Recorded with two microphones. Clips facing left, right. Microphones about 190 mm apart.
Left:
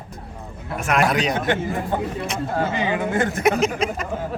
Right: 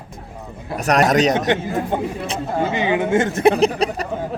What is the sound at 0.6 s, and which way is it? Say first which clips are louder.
Speech: right 4 dB; 35° right (ahead or behind).